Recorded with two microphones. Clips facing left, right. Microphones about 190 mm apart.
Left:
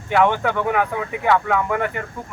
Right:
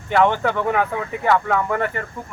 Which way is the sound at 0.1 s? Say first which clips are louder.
Even; 5° left (ahead or behind).